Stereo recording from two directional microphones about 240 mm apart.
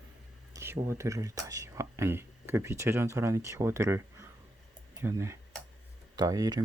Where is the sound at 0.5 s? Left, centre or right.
Centre.